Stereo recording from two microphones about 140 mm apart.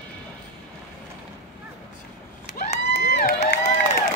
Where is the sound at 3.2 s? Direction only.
80° left.